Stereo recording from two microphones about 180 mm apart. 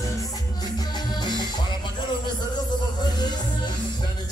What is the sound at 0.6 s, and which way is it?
Music, 25° left (ahead or behind).